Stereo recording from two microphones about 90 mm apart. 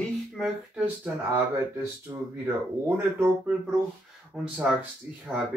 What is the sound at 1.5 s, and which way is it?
Speech, 25° right (ahead or behind).